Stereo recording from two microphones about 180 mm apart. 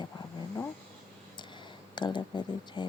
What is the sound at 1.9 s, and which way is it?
Speech, 25° left (ahead or behind).